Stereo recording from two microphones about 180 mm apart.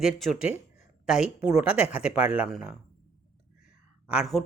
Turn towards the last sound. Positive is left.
turn(degrees=-5)  # may be behind; listen again after turning